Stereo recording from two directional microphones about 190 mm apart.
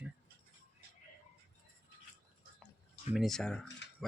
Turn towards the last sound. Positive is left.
turn(degrees=5)  # may be behind; listen again after turning